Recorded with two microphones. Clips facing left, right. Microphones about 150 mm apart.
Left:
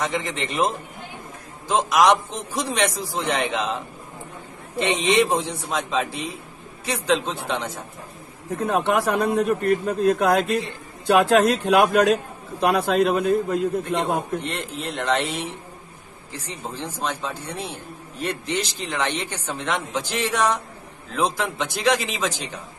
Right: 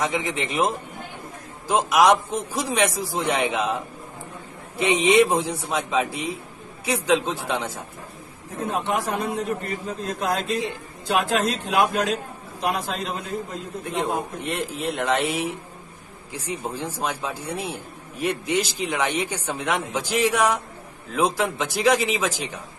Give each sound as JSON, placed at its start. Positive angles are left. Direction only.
{"t": 0.1, "sound": "speech", "side_deg": -10}
{"t": 1.7, "sound": "speech", "side_deg": -10}
{"t": 4.7, "sound": "speech", "side_deg": -10}
{"t": 8.6, "sound": "a man's voice", "side_deg": 65}
{"t": 14.4, "sound": "speech", "side_deg": -5}